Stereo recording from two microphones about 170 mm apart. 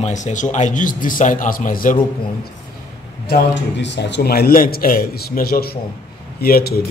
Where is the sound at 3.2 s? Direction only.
80° left.